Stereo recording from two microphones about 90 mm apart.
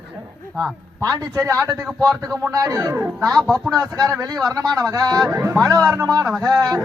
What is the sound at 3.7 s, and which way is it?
Speech, 45° right (ahead or behind).